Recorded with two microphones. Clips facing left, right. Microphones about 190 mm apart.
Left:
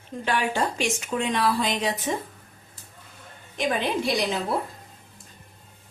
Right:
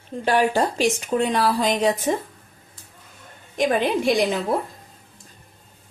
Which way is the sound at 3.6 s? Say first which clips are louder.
Right 5 dB; 50° right (ahead or behind).